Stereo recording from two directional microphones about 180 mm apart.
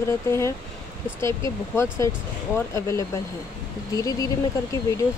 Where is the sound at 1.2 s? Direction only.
15° left (ahead or behind).